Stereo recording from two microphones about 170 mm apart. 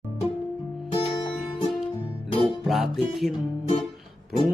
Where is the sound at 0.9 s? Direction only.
30° left (ahead or behind).